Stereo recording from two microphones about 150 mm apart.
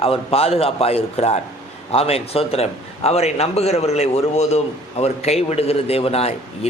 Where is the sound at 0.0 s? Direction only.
40° left (ahead or behind).